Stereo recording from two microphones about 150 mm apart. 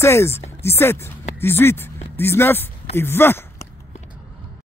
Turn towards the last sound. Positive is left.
turn(degrees=15)  # may be behind; listen again after turning